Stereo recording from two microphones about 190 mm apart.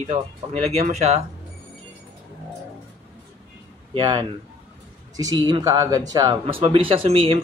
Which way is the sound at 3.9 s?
25° right (ahead or behind).